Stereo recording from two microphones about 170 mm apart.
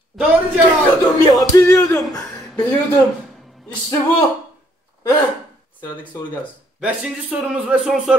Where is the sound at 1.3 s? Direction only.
20° left (ahead or behind).